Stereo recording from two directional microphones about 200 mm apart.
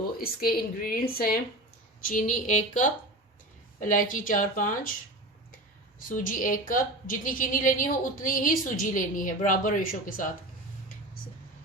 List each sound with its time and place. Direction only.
0.2 s a woman's voice: 50° left (ahead or behind)
6.1 s a woman's voice: 40° left (ahead or behind)